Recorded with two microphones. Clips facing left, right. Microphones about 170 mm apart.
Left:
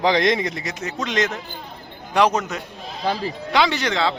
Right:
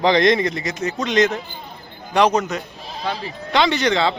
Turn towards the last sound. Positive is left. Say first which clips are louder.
# right 3 dB
turn(degrees=5)  # may be behind; listen again after turning